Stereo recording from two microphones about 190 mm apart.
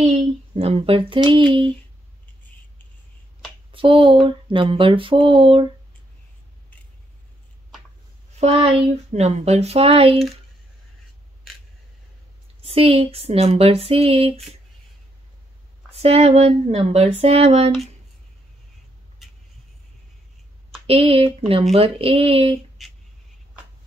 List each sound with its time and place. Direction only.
0.6 s speech: 30° right (ahead or behind)
3.7 s speech: 25° right (ahead or behind)
8.4 s speech: 35° right (ahead or behind)
12.6 s speech: 30° right (ahead or behind)
15.9 s speech: 35° right (ahead or behind)
20.8 s speech: 30° right (ahead or behind)